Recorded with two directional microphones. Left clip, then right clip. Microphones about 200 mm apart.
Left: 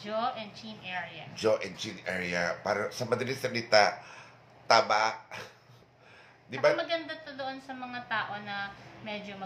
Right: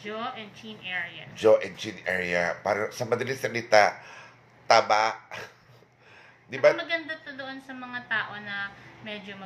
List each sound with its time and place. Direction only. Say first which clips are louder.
0.0 s speech: left 2 dB; 30° left (ahead or behind)
1.3 s speech: right 8 dB; 15° right (ahead or behind)
6.5 s speech: right 5 dB; 10° right (ahead or behind)
6.9 s a woman's voice: right 3 dB; 20° left (ahead or behind)